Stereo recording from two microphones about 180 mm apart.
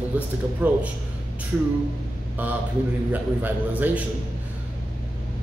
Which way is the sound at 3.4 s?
10° right (ahead or behind).